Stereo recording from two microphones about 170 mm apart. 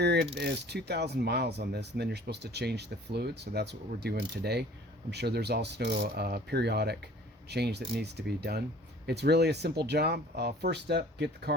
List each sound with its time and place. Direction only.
0.0 s mechanisms: 75° right (ahead or behind)
0.3 s speech: 80° right